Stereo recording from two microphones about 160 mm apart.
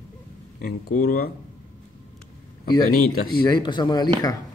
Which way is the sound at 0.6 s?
65° left (ahead or behind).